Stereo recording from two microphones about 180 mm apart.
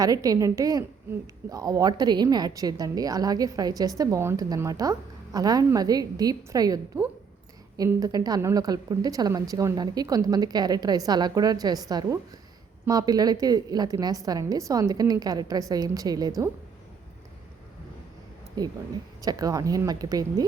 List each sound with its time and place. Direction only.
0.0 s a woman's voice: 20° right (ahead or behind)
18.6 s a woman's voice: 20° right (ahead or behind)